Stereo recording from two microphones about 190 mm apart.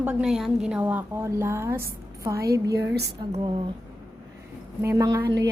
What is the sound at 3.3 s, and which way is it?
Speech, 25° right (ahead or behind).